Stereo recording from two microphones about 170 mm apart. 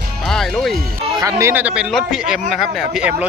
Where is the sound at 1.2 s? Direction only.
20° right (ahead or behind).